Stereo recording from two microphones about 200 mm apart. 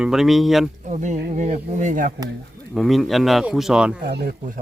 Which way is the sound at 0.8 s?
40° right (ahead or behind).